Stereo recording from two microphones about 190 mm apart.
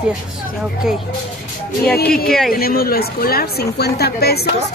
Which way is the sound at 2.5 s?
50° left (ahead or behind).